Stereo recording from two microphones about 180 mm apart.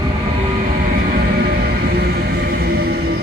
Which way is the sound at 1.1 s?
60° right (ahead or behind).